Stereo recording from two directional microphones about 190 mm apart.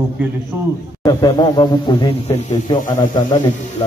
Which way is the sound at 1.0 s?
20° left (ahead or behind).